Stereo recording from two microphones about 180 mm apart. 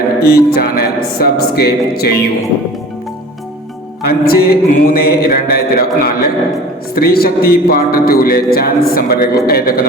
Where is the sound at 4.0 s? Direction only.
60° left (ahead or behind).